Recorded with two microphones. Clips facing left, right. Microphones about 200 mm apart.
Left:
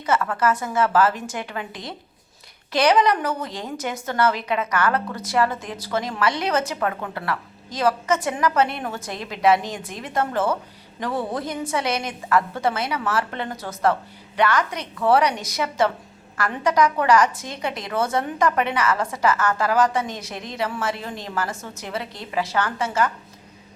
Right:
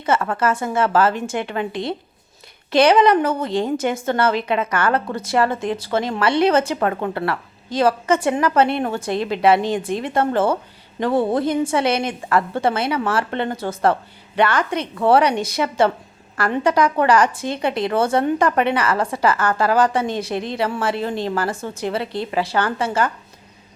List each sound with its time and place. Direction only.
0.0 s a woman's voice: 30° right (ahead or behind)